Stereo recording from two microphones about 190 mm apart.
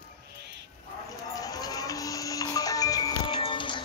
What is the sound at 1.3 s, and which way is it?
Music, 20° left (ahead or behind).